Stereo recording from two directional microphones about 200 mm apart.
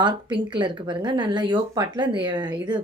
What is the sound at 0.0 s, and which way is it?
Speech, 25° right (ahead or behind).